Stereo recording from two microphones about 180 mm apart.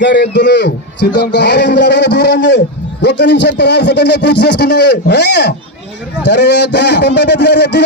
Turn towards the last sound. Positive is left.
turn(degrees=70)  # may be behind; listen again after turning